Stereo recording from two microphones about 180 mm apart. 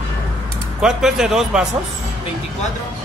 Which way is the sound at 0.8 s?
5° right (ahead or behind).